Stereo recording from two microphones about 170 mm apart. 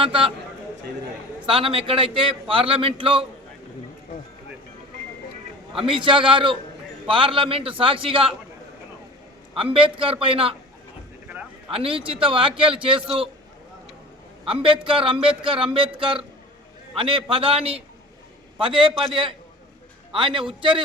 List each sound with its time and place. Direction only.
0.0 s a man's voice: 30° right (ahead or behind)
1.5 s a man's voice: 30° right (ahead or behind)
5.7 s a man's voice: 30° right (ahead or behind)
9.7 s a man's voice: 30° right (ahead or behind)
11.7 s a man's voice: 35° right (ahead or behind)
14.4 s a man's voice: 30° right (ahead or behind)